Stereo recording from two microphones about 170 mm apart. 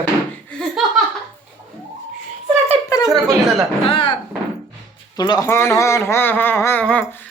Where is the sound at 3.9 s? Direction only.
30° left (ahead or behind).